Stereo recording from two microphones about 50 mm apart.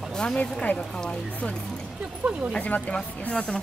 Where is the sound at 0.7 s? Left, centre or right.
Centre.